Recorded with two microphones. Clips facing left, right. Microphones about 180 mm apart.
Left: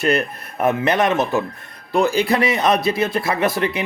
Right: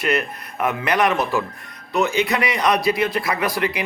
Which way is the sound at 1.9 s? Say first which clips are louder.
Left 3 dB; 30° left (ahead or behind).